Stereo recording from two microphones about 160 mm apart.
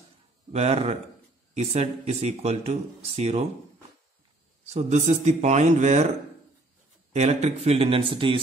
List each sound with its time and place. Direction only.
0.5 s speech: 40° right (ahead or behind)
4.6 s speech: 40° right (ahead or behind)
7.1 s speech: 45° right (ahead or behind)